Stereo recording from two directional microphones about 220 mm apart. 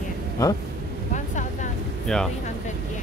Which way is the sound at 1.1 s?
35° left (ahead or behind).